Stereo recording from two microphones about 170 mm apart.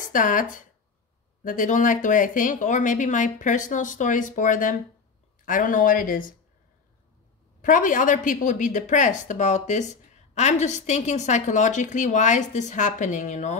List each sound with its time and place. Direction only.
0.0 s a woman's voice: 50° left (ahead or behind)
7.6 s a woman's voice: 50° left (ahead or behind)